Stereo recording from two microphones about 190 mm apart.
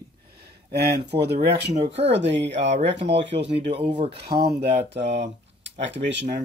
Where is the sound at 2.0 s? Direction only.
70° right (ahead or behind).